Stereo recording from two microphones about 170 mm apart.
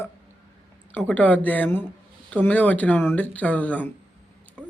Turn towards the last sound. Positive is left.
turn(degrees=10)  # may be behind; listen again after turning